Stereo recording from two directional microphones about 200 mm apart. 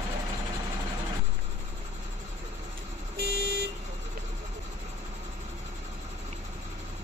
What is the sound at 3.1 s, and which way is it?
Vehicle, 55° right (ahead or behind).